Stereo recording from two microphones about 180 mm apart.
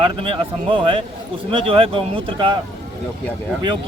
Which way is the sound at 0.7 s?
30° right (ahead or behind).